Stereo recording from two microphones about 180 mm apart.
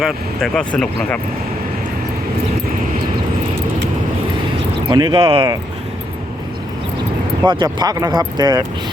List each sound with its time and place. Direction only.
0.0 s speech: centre (ahead or behind)
4.9 s speech: 25° right (ahead or behind)
7.4 s speech: 25° right (ahead or behind)